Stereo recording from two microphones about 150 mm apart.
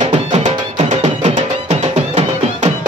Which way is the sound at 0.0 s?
50° right (ahead or behind).